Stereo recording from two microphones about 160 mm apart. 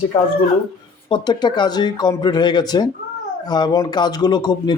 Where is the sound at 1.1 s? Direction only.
25° left (ahead or behind).